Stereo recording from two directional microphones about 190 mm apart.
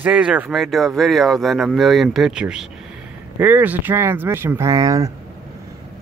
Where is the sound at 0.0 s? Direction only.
5° right (ahead or behind).